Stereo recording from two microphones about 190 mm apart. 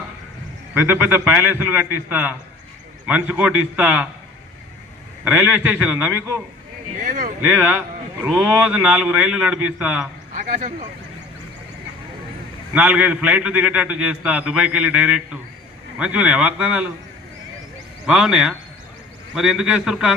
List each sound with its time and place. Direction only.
0.7 s a man's voice: 10° right (ahead or behind)
5.2 s a man's voice: 5° right (ahead or behind)
7.0 s speech: 40° right (ahead or behind)
7.4 s a man's voice: 10° right (ahead or behind)
10.3 s speech: 40° right (ahead or behind)
12.7 s a man's voice: 5° right (ahead or behind)
18.0 s a man's voice: 5° right (ahead or behind)